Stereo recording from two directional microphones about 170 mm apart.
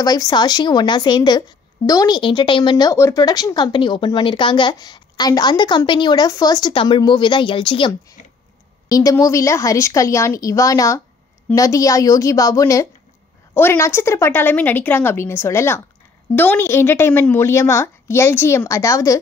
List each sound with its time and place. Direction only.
0.0 s speech: 25° left (ahead or behind)
8.9 s a woman's voice: 20° left (ahead or behind)